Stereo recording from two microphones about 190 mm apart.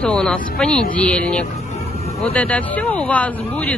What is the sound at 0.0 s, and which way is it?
Speech, 5° left (ahead or behind).